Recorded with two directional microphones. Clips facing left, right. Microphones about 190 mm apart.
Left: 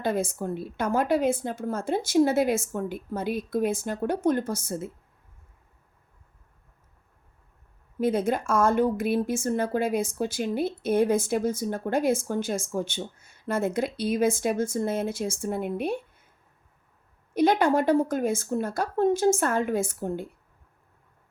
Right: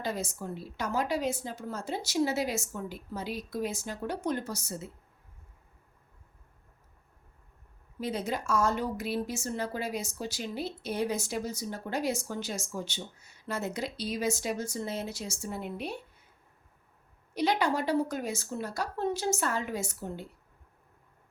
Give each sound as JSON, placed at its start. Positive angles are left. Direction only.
{"t": 0.0, "sound": "speech", "side_deg": 55}
{"t": 7.9, "sound": "speech", "side_deg": 50}
{"t": 17.3, "sound": "speech", "side_deg": 50}